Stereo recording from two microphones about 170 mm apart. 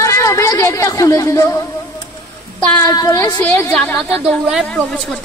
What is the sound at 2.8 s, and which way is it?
Speech, 20° left (ahead or behind).